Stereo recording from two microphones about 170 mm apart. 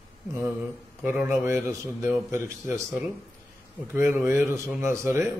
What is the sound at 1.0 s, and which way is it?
A man's voice, 10° right (ahead or behind).